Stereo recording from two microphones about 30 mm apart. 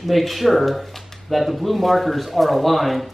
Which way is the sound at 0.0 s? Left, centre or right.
Centre.